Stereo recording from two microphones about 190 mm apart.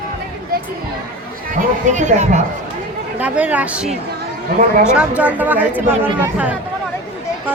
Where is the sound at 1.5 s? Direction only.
40° right (ahead or behind).